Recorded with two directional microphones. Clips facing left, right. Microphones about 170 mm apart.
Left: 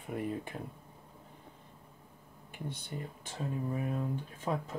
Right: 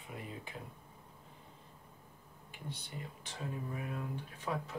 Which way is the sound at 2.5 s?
50° left (ahead or behind).